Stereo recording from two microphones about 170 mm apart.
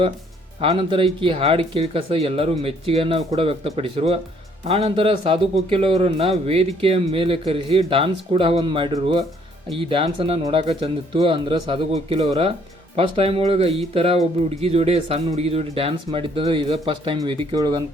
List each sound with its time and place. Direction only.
0.6 s speech: 30° right (ahead or behind)